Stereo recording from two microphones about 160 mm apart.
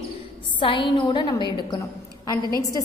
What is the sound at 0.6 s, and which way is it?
A woman's voice, 35° left (ahead or behind).